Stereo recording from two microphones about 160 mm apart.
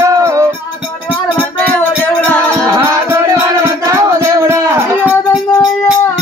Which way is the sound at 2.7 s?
15° right (ahead or behind).